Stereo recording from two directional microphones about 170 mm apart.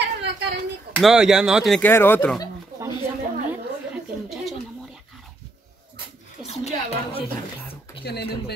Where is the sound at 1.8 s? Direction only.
15° left (ahead or behind).